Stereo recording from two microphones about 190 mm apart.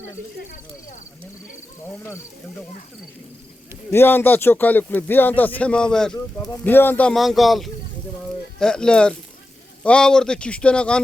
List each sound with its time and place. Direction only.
0.3 s speech: 45° left (ahead or behind)
3.9 s speech: 10° left (ahead or behind)